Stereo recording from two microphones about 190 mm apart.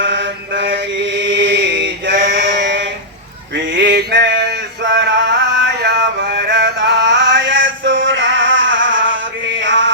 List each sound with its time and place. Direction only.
0.0 s chant: 70° right (ahead or behind)
3.5 s male singing: 70° right (ahead or behind)
5.8 s music: 60° right (ahead or behind); by 9.9 s 80° right